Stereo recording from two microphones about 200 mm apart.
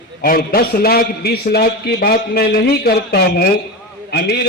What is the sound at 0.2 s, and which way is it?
A man's voice, 45° left (ahead or behind).